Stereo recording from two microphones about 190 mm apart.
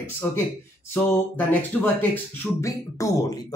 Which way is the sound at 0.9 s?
10° left (ahead or behind).